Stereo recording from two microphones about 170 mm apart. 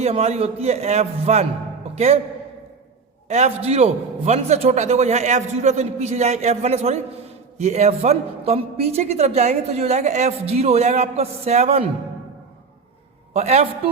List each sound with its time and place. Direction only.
0.0 s a woman's voice: 40° right (ahead or behind)
3.2 s a woman's voice: 40° right (ahead or behind)
13.3 s a woman's voice: 40° right (ahead or behind)